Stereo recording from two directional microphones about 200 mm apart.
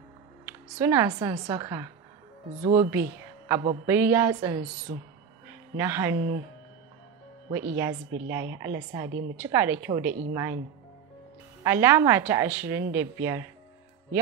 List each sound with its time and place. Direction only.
0.5 s a woman's voice: 10° right (ahead or behind)
7.5 s speech: 10° right (ahead or behind)
11.6 s speech: 10° right (ahead or behind)